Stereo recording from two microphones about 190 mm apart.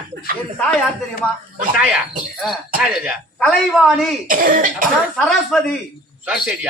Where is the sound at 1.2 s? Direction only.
10° left (ahead or behind).